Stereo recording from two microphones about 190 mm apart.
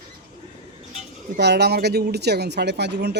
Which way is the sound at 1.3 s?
60° right (ahead or behind).